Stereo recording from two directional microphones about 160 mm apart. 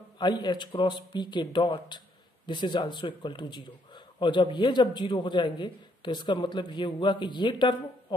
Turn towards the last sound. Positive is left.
turn(degrees=30)  # may be behind; listen again after turning